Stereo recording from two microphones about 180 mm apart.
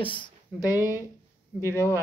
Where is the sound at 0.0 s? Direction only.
25° left (ahead or behind).